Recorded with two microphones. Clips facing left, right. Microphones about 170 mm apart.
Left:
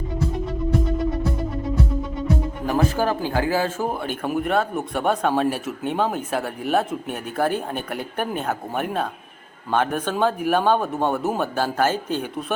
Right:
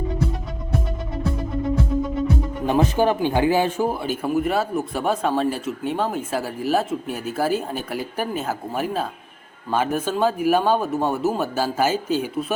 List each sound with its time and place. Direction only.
2.6 s speech: 20° right (ahead or behind)
4.0 s speech: 5° right (ahead or behind)